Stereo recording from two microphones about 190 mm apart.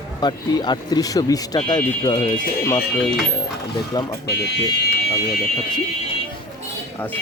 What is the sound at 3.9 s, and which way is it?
Speech, 20° left (ahead or behind).